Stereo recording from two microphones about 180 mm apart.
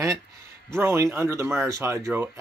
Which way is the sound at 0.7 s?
15° right (ahead or behind).